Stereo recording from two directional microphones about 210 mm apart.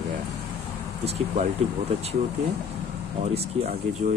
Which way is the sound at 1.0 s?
30° right (ahead or behind).